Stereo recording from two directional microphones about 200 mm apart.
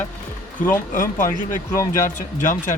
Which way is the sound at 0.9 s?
40° left (ahead or behind).